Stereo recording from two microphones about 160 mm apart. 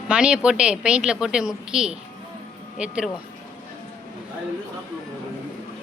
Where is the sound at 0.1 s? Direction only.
5° right (ahead or behind).